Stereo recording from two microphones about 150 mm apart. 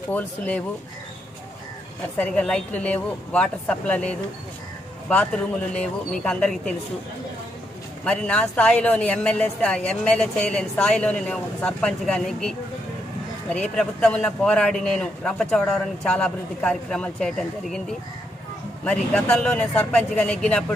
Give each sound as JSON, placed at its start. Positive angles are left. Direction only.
{"t": 0.1, "sound": "speech", "side_deg": 10}
{"t": 2.1, "sound": "speech", "side_deg": 10}
{"t": 8.0, "sound": "a man's voice", "side_deg": 5}
{"t": 18.9, "sound": "speech", "side_deg": 5}